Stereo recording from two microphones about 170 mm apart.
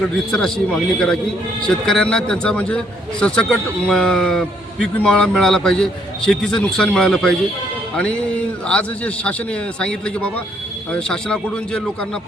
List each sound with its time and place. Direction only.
0.3 s a man's voice: 5° left (ahead or behind)
8.6 s a man's voice: 5° left (ahead or behind)